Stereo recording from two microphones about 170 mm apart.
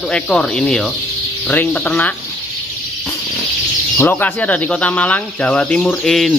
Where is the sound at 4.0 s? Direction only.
10° left (ahead or behind).